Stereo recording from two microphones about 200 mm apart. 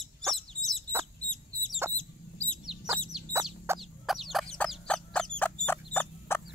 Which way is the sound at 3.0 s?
Centre (ahead or behind).